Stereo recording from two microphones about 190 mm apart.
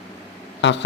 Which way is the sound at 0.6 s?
65° left (ahead or behind).